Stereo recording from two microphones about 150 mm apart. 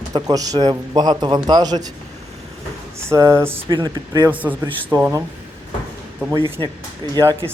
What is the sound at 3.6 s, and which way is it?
Speech, 30° right (ahead or behind).